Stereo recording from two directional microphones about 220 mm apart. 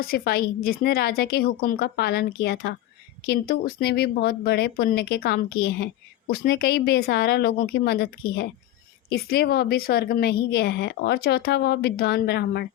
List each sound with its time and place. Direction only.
0.0 s speech: 45° left (ahead or behind)